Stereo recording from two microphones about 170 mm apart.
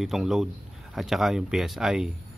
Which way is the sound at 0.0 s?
Centre (ahead or behind).